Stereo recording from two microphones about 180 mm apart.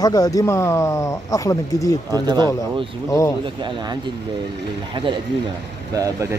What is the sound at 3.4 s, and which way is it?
Speech, 25° right (ahead or behind).